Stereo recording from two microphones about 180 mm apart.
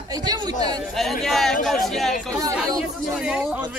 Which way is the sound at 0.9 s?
Centre (ahead or behind).